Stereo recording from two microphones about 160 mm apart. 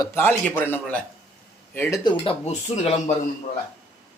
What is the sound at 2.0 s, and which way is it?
Speech, 30° left (ahead or behind).